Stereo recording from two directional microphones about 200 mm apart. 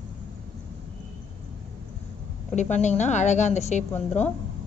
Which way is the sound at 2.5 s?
35° left (ahead or behind).